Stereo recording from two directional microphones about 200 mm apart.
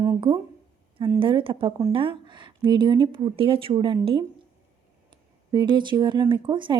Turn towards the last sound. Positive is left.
turn(degrees=-25)  # may be behind; listen again after turning